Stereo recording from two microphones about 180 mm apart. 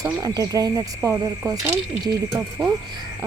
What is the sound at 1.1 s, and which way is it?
Speech, 5° right (ahead or behind).